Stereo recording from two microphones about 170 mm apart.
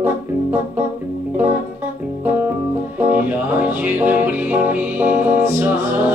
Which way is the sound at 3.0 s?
10° right (ahead or behind).